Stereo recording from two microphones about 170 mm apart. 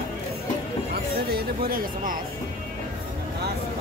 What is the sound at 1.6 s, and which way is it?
Speech, 55° right (ahead or behind).